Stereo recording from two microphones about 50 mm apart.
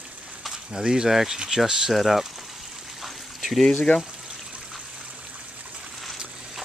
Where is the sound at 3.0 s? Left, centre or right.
Centre.